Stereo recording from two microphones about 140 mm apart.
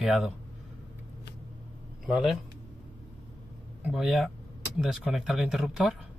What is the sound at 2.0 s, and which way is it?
Speech, centre (ahead or behind).